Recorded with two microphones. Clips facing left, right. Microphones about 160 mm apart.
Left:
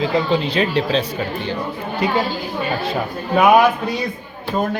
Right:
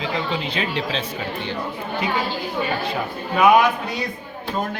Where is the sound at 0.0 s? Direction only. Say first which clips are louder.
Left 7 dB; 35° left (ahead or behind).